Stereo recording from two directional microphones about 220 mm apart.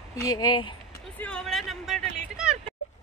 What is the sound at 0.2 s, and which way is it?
Speech, 20° left (ahead or behind).